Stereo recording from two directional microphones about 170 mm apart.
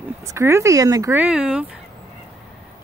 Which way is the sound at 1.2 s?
5° right (ahead or behind).